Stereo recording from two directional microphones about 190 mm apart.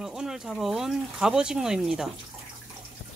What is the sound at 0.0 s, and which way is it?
Speech, centre (ahead or behind).